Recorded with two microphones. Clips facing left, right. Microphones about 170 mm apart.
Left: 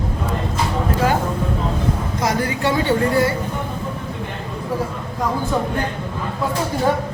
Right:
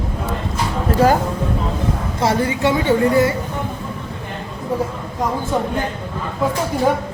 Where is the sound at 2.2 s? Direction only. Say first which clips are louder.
Right 5 dB; 25° right (ahead or behind).